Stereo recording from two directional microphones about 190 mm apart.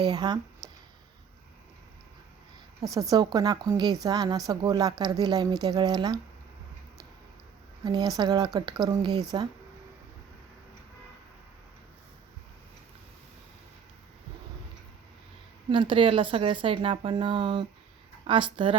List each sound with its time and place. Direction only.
0.0 s a woman's voice: 20° right (ahead or behind)
0.6 s a sound: 20° right (ahead or behind)
2.8 s a woman's voice: 20° right (ahead or behind)
7.9 s a woman's voice: 20° right (ahead or behind)
15.7 s a woman's voice: 25° right (ahead or behind)